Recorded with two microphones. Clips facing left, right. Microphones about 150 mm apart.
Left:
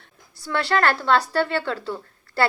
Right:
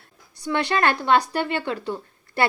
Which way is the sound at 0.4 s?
15° right (ahead or behind).